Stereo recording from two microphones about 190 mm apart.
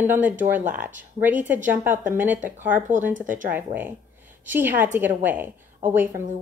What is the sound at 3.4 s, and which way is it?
A woman's voice, 10° right (ahead or behind).